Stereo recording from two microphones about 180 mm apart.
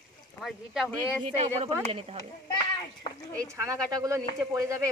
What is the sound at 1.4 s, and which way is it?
Speech, 35° right (ahead or behind).